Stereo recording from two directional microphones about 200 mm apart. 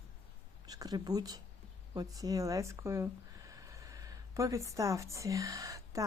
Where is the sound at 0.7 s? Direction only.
20° right (ahead or behind).